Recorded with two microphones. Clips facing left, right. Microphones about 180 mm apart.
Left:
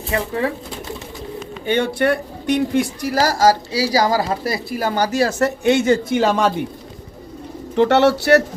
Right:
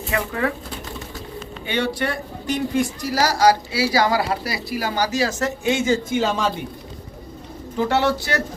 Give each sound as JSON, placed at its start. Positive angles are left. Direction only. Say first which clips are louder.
{"t": 0.1, "sound": "speech", "louder": "left 2 dB", "side_deg": 30}
{"t": 1.6, "sound": "speech", "louder": "left 6 dB", "side_deg": 50}
{"t": 4.8, "sound": "speech", "louder": "left 4 dB", "side_deg": 55}
{"t": 7.8, "sound": "speech", "louder": "left 6 dB", "side_deg": 70}